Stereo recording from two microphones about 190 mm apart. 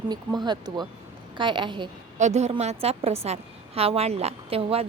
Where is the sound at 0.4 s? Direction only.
20° right (ahead or behind).